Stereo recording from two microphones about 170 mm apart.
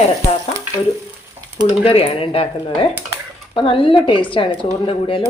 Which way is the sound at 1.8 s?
35° left (ahead or behind).